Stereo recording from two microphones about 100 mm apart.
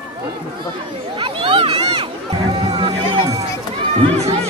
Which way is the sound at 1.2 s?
65° right (ahead or behind).